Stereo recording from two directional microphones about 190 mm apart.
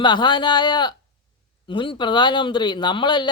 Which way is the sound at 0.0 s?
25° left (ahead or behind).